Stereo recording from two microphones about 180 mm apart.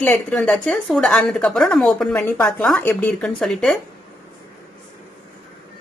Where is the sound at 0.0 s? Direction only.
5° left (ahead or behind).